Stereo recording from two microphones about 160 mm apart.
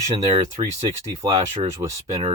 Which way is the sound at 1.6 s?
20° right (ahead or behind).